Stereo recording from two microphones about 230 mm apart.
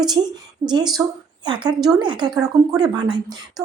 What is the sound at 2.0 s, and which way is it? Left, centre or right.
A woman's voice, centre.